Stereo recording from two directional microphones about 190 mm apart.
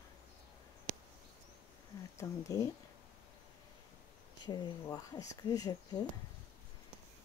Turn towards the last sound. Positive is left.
turn(degrees=20)  # may be behind; listen again after turning